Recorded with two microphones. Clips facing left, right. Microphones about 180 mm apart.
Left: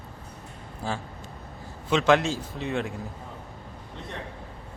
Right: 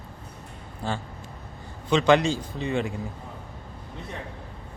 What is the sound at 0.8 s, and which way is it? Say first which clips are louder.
A man's voice: right 1 dB; centre (ahead or behind).